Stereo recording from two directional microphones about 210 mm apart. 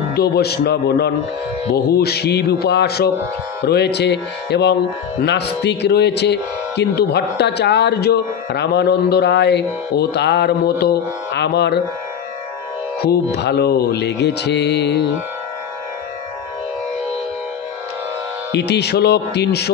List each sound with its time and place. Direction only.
0.1 s speech: 50° left (ahead or behind)
13.0 s speech: 50° left (ahead or behind)
18.5 s speech: 55° left (ahead or behind)